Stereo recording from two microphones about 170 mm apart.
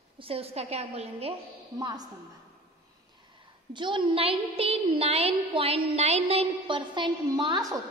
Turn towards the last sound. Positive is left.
turn(degrees=-20)  # may be behind; listen again after turning